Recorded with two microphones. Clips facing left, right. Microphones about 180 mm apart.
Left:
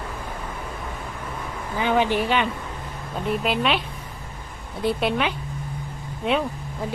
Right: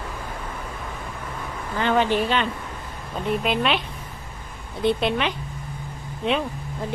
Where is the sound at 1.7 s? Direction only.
10° left (ahead or behind).